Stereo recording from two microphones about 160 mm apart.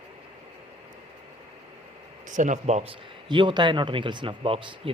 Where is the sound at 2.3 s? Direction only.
50° right (ahead or behind).